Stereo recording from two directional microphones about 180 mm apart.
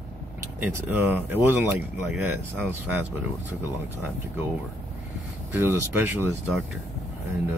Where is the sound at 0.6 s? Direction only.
10° right (ahead or behind).